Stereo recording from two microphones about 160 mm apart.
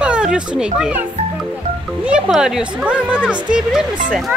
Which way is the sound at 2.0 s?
5° right (ahead or behind).